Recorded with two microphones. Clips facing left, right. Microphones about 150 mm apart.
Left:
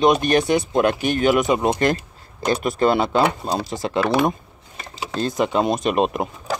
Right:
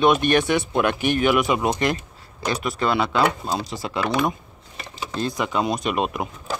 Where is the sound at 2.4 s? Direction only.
50° left (ahead or behind).